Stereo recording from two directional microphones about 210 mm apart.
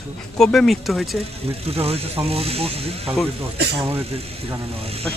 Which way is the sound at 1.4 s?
30° right (ahead or behind).